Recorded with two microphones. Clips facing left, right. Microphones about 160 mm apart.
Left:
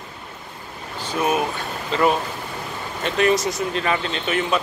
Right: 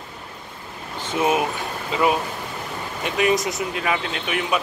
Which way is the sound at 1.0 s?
20° right (ahead or behind).